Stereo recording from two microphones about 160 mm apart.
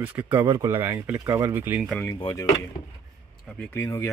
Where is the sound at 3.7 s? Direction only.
20° left (ahead or behind).